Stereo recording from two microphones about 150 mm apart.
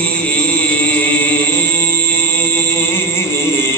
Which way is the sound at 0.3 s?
10° left (ahead or behind).